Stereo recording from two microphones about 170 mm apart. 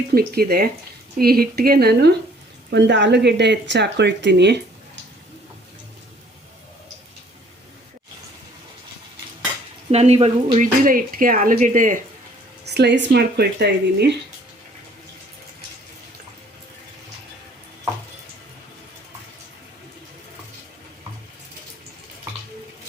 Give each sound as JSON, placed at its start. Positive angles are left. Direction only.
{"t": 0.1, "sound": "speech", "side_deg": -65}
{"t": 2.6, "sound": "speech", "side_deg": -90}
{"t": 9.9, "sound": "speech", "side_deg": -40}
{"t": 10.6, "sound": "speech", "side_deg": -55}
{"t": 12.6, "sound": "speech", "side_deg": -80}